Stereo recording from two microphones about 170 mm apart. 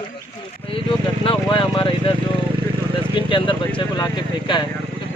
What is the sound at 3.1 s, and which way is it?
Speech, 30° left (ahead or behind).